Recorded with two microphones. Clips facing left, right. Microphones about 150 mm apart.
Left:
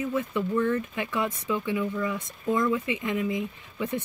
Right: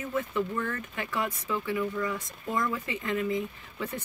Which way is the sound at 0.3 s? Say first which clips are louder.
Left 5 dB; 20° left (ahead or behind).